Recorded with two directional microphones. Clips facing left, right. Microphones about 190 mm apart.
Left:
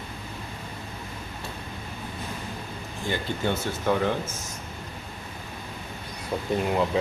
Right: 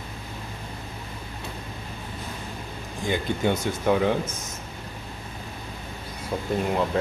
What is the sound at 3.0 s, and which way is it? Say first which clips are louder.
Speech: right 3 dB; 15° right (ahead or behind).